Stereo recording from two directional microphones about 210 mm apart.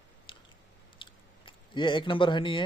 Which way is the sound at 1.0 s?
25° left (ahead or behind).